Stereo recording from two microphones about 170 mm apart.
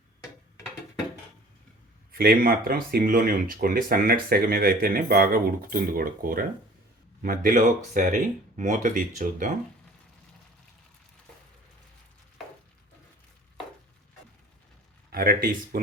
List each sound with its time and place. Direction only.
2.1 s speech: 60° right (ahead or behind)
15.1 s speech: 60° right (ahead or behind)